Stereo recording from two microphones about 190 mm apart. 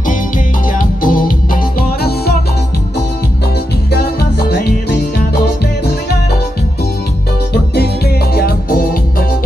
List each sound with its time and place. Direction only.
0.7 s music: 45° left (ahead or behind)
4.5 s music: 60° left (ahead or behind)
8.4 s music: 50° left (ahead or behind)